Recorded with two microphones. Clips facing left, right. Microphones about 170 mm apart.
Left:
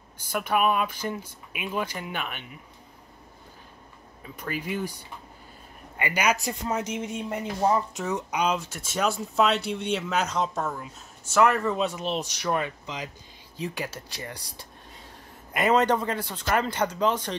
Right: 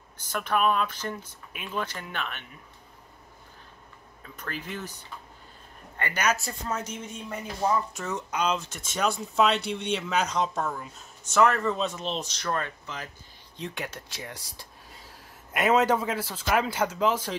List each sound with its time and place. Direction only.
0.3 s speech: 10° left (ahead or behind)
4.2 s speech: 10° left (ahead or behind)
5.9 s speech: 10° left (ahead or behind)
6.8 s speech: 90° left
7.2 s speech: 20° left (ahead or behind)
13.6 s a man's voice: 5° left (ahead or behind)